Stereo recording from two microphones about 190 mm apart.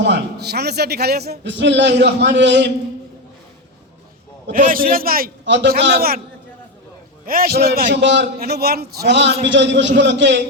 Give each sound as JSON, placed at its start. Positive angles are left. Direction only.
{"t": 0.0, "sound": "a man's voice", "side_deg": -60}
{"t": 4.5, "sound": "a man's voice", "side_deg": -45}
{"t": 5.5, "sound": "a man's voice", "side_deg": -65}
{"t": 7.3, "sound": "a man's voice", "side_deg": -50}
{"t": 7.9, "sound": "a man's voice", "side_deg": -65}